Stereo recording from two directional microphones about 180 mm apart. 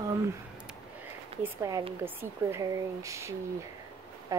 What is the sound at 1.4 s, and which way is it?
Speech, 20° right (ahead or behind).